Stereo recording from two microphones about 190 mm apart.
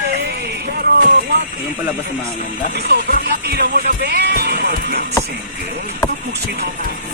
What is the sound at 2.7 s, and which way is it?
Speech, 60° right (ahead or behind).